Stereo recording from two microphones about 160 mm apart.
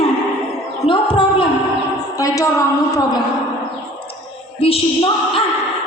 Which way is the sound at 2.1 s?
20° left (ahead or behind).